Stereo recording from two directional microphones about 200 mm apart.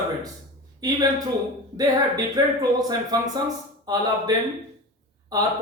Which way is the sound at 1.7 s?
20° right (ahead or behind).